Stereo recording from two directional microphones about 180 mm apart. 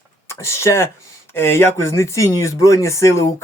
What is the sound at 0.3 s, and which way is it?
Speech, 15° left (ahead or behind).